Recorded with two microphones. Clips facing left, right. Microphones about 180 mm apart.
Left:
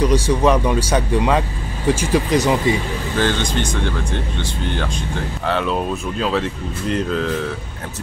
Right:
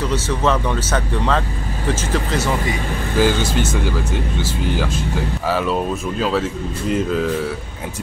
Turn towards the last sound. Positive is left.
turn(degrees=-5)  # may be behind; listen again after turning